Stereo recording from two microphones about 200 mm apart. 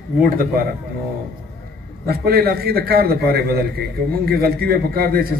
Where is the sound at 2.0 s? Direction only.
50° right (ahead or behind).